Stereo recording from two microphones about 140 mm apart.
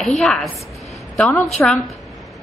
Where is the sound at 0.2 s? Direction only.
5° left (ahead or behind).